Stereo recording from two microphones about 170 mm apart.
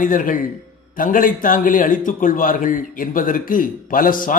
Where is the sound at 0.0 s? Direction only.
50° left (ahead or behind).